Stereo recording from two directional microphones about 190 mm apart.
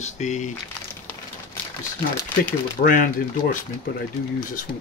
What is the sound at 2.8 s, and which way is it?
Speech, 45° left (ahead or behind).